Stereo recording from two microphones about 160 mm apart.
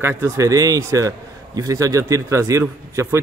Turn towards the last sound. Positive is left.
turn(degrees=-15)  # may be behind; listen again after turning